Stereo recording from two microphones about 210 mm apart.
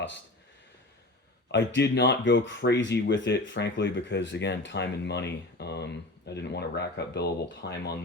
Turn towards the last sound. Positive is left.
turn(degrees=50)  # may be behind; listen again after turning